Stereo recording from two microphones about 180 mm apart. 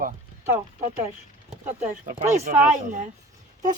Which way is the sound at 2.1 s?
40° right (ahead or behind).